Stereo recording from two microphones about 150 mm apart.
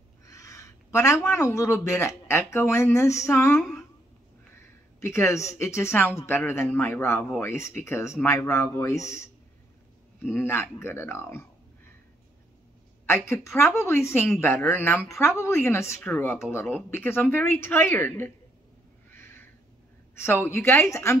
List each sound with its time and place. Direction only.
0.2 s speech: 20° left (ahead or behind)
5.0 s speech: 20° left (ahead or behind)
13.0 s speech: 15° left (ahead or behind)
19.0 s owl: 15° left (ahead or behind)
20.4 s speech: 15° left (ahead or behind)